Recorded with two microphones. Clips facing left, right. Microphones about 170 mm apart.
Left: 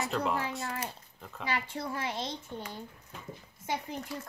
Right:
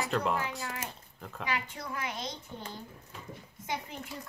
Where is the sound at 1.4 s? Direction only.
30° left (ahead or behind).